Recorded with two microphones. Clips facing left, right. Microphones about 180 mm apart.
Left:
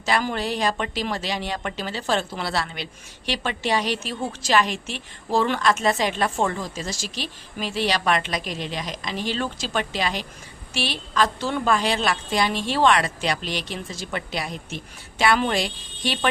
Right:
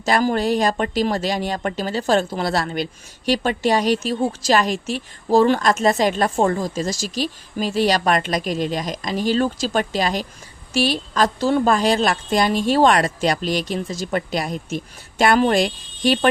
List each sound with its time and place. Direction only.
0.0 s speech: 40° right (ahead or behind)